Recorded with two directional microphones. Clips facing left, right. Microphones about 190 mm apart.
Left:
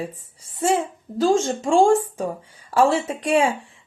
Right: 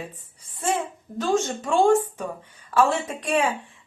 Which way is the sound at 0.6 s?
30° left (ahead or behind).